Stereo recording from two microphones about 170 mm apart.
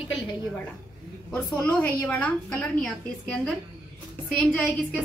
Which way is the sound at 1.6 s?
5° left (ahead or behind).